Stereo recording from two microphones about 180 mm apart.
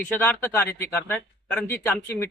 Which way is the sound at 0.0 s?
10° left (ahead or behind).